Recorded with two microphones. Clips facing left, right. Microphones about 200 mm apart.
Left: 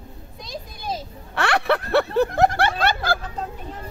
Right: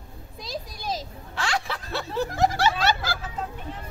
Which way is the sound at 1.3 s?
65° left (ahead or behind).